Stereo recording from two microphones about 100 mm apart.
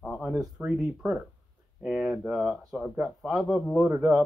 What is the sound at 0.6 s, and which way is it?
Speech, 15° right (ahead or behind).